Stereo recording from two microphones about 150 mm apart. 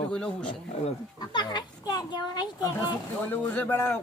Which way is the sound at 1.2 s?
30° left (ahead or behind).